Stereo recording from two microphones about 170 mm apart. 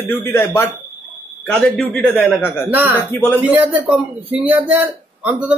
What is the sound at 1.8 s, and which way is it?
Speech, 5° left (ahead or behind).